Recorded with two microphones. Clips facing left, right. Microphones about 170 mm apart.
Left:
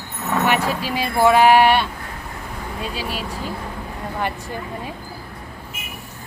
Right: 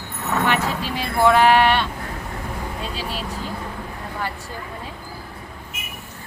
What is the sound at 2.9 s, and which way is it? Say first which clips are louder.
Speech: left 2 dB; 10° left (ahead or behind).